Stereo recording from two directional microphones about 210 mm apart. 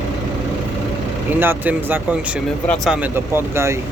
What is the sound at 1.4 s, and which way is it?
Speech, 10° right (ahead or behind).